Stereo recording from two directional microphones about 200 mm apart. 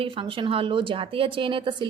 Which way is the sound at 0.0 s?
25° right (ahead or behind).